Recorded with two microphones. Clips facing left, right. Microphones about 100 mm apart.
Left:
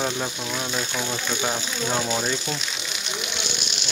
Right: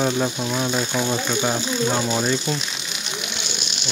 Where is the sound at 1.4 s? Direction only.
5° right (ahead or behind).